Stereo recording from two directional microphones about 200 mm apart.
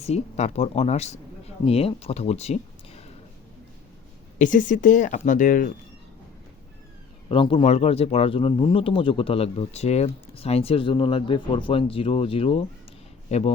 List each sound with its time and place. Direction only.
0.0 s speech: 35° left (ahead or behind)
4.4 s speech: 40° left (ahead or behind)
7.3 s speech: 25° left (ahead or behind)